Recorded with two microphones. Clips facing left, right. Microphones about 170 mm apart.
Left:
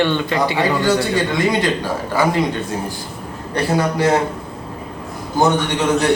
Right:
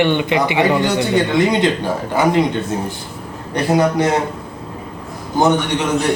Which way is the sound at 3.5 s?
20° right (ahead or behind).